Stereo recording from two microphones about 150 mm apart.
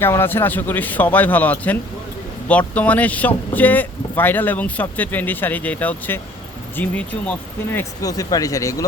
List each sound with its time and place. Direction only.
0.0 s speech: 15° left (ahead or behind)